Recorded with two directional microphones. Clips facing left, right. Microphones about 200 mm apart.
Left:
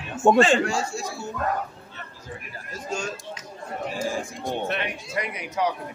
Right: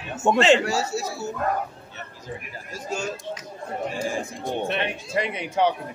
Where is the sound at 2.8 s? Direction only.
5° right (ahead or behind).